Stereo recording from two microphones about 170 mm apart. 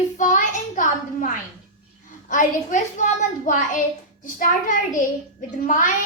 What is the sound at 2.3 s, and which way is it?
A child's voice, 50° left (ahead or behind).